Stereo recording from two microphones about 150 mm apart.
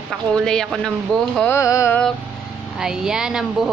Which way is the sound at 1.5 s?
20° left (ahead or behind).